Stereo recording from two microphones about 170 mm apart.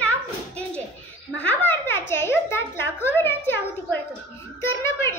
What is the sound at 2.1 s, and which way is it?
Speech, 15° left (ahead or behind).